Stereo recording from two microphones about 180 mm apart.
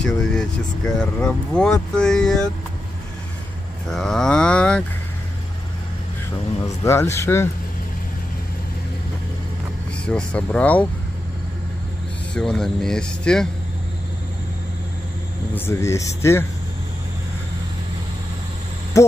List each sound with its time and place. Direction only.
0.0 s speech: 5° left (ahead or behind)
3.9 s speech: centre (ahead or behind)
6.6 s speech: 15° left (ahead or behind)
10.0 s speech: 5° left (ahead or behind)
12.4 s speech: centre (ahead or behind)
15.5 s speech: 15° left (ahead or behind)
18.9 s a sound: 15° left (ahead or behind)